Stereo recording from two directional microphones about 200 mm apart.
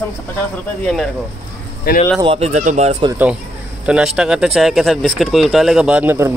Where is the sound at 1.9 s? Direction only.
50° left (ahead or behind).